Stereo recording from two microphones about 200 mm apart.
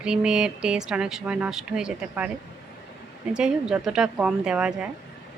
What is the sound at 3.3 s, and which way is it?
A woman's voice, 5° right (ahead or behind).